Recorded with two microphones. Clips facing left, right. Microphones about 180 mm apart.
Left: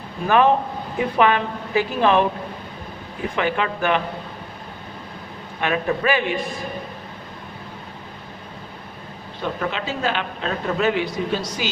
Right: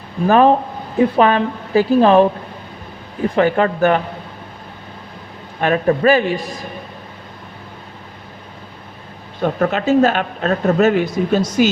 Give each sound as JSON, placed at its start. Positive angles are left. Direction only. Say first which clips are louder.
{"t": 0.3, "sound": "a woman's voice", "louder": "right 5 dB", "side_deg": -35}
{"t": 3.3, "sound": "a woman's voice", "louder": "right 8 dB", "side_deg": -40}
{"t": 5.5, "sound": "a woman's voice", "louder": "right 7 dB", "side_deg": -40}
{"t": 9.4, "sound": "a woman's voice", "louder": "right 8 dB", "side_deg": -45}